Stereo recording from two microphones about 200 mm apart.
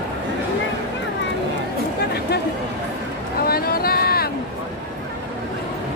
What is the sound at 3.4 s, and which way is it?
Vehicle, 50° left (ahead or behind).